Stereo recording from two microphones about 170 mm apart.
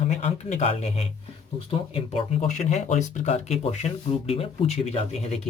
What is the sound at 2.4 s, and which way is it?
Speech, 40° left (ahead or behind).